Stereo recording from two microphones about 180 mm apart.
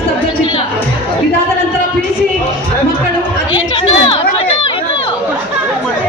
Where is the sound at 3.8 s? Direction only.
30° left (ahead or behind).